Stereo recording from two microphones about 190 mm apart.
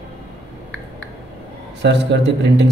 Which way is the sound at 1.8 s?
65° right (ahead or behind).